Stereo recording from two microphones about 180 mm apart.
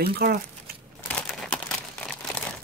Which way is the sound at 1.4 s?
5° left (ahead or behind).